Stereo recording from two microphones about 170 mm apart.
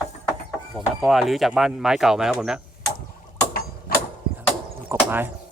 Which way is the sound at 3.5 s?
60° left (ahead or behind).